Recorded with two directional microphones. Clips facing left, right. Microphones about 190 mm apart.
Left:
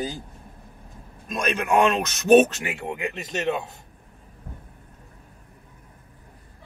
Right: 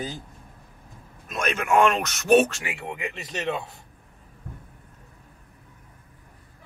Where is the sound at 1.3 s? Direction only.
15° left (ahead or behind).